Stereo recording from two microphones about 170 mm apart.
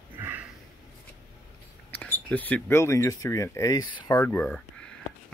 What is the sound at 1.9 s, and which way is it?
Speech, 10° left (ahead or behind).